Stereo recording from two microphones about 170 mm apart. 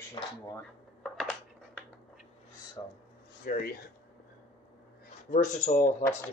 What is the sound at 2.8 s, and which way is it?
Speech, 20° left (ahead or behind).